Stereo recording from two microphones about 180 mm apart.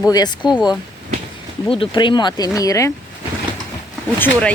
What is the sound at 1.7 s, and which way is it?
Speech, 30° left (ahead or behind).